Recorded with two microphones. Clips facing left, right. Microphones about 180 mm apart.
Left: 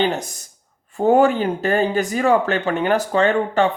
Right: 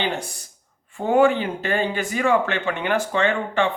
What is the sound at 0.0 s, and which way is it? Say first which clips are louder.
Speech: left 5 dB; 40° left (ahead or behind).